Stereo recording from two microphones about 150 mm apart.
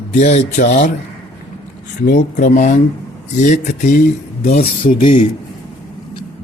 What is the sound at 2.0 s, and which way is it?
Speech, 75° left (ahead or behind).